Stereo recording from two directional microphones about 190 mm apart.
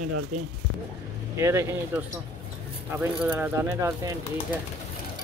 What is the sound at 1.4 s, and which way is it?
Speech, 15° right (ahead or behind).